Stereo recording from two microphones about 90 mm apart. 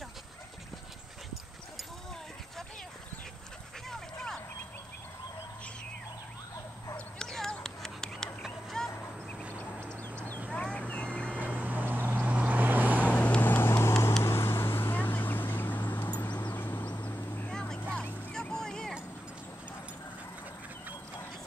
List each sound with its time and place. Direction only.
3.9 s vehicle: 5° left (ahead or behind)
7.2 s a sound: 5° left (ahead or behind)
10.5 s vehicle: 15° left (ahead or behind)
11.4 s vehicle: 20° right (ahead or behind)
13.1 s vehicle: 15° left (ahead or behind)
17.5 s vehicle: 10° left (ahead or behind)
17.9 s a sound: 10° left (ahead or behind)